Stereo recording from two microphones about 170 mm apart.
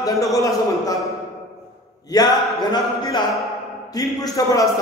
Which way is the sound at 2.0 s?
20° left (ahead or behind).